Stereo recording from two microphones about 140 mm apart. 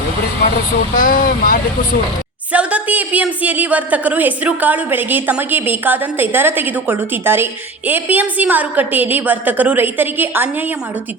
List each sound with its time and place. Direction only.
0.9 s speech: 80° left
2.5 s a woman's voice: 10° right (ahead or behind)